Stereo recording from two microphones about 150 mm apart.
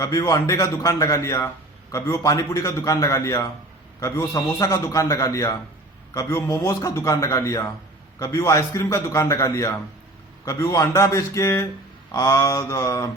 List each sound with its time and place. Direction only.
0.0 s a man's voice: 20° left (ahead or behind)